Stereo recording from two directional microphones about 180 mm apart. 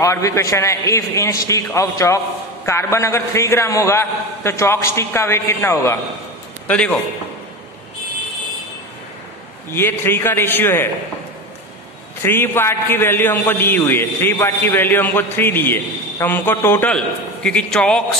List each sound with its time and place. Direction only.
0.0 s a man's voice: 15° left (ahead or behind)
9.7 s a man's voice: 10° left (ahead or behind)
12.2 s a man's voice: 10° left (ahead or behind)